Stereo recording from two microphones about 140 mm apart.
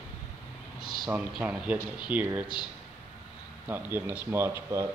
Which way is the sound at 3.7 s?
15° right (ahead or behind).